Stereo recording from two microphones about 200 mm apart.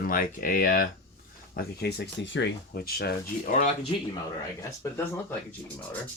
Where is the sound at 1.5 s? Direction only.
60° left (ahead or behind); by 3.7 s 40° left (ahead or behind).